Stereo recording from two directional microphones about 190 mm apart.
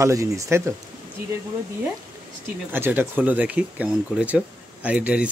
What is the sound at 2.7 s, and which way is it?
Speech, 10° right (ahead or behind).